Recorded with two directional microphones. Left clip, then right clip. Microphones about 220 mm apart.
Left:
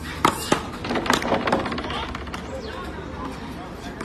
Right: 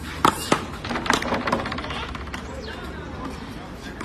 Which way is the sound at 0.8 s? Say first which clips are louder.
Left 1 dB; 35° left (ahead or behind).